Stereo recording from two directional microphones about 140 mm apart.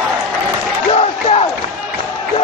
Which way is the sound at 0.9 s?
45° left (ahead or behind).